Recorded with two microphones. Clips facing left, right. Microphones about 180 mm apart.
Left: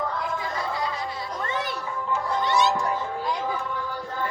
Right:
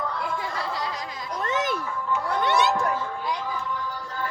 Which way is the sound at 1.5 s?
90° right.